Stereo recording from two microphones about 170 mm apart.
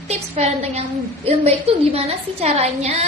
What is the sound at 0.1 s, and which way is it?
Female singing, 40° right (ahead or behind).